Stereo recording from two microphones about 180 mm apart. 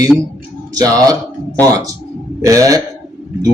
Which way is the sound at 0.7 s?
20° right (ahead or behind).